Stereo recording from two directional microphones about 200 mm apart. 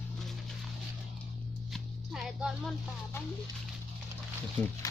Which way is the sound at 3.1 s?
10° left (ahead or behind).